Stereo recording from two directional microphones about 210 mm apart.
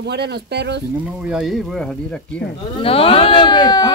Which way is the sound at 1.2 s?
5° right (ahead or behind).